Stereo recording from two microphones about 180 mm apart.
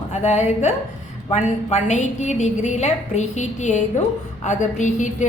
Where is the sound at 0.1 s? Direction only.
40° left (ahead or behind).